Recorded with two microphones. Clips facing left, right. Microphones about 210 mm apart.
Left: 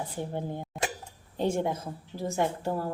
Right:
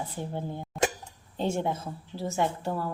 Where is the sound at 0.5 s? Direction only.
50° left (ahead or behind).